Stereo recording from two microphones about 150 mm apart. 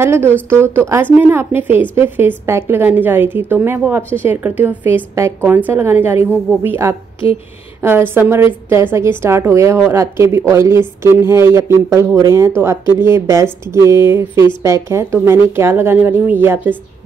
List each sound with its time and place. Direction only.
0.0 s a woman's voice: 15° right (ahead or behind)